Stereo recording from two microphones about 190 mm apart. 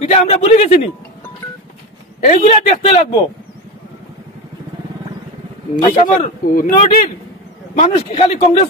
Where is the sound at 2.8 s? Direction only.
30° left (ahead or behind).